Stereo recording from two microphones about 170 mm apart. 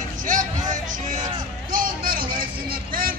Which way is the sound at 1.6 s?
55° right (ahead or behind).